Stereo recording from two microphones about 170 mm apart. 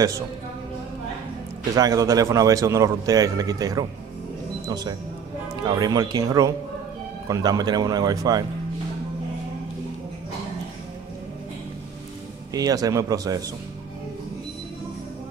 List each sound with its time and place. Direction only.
1.8 s a man's voice: 20° right (ahead or behind)
12.5 s a man's voice: 20° right (ahead or behind)